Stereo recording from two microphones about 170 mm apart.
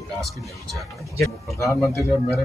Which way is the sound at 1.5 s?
15° left (ahead or behind).